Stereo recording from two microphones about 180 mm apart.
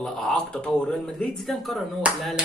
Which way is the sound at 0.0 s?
Centre (ahead or behind).